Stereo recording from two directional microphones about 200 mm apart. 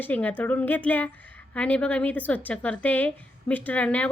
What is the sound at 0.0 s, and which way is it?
A woman's voice, 10° left (ahead or behind).